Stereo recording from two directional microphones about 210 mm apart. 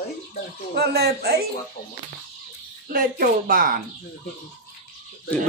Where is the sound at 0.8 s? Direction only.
50° right (ahead or behind).